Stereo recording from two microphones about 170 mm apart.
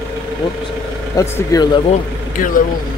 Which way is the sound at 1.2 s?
20° left (ahead or behind).